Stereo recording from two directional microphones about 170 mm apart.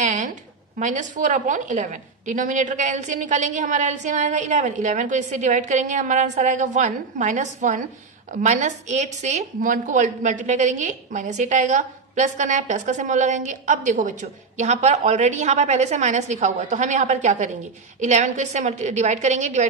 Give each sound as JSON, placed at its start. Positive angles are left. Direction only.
{"t": 0.0, "sound": "a woman's voice", "side_deg": -45}